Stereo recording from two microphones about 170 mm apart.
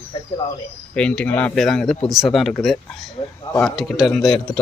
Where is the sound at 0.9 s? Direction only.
5° left (ahead or behind).